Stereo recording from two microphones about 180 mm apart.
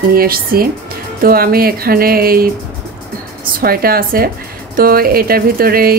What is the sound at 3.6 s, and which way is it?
Speech, 55° right (ahead or behind).